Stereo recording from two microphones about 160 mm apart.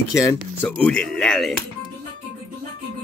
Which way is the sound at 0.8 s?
5° left (ahead or behind).